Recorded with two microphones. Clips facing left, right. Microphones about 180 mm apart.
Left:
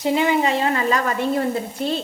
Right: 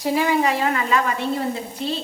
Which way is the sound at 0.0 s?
20° left (ahead or behind).